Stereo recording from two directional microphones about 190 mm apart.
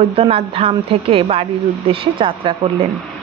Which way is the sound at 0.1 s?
30° right (ahead or behind).